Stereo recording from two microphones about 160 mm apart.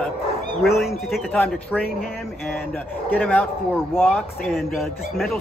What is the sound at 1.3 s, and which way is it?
Speech, 10° left (ahead or behind).